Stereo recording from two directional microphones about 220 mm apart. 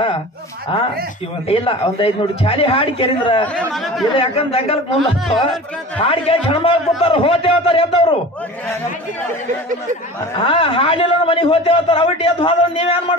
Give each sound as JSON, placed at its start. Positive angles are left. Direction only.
{"t": 1.5, "sound": "a man's voice", "side_deg": 25}
{"t": 3.5, "sound": "a man's voice", "side_deg": 0}
{"t": 4.1, "sound": "a man's voice", "side_deg": 25}
{"t": 4.9, "sound": "a man's voice", "side_deg": 0}
{"t": 5.9, "sound": "a man's voice", "side_deg": 25}
{"t": 10.4, "sound": "a man's voice", "side_deg": 25}